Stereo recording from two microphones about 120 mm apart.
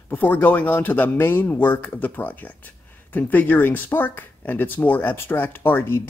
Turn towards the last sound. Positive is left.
turn(degrees=20)  # may be behind; listen again after turning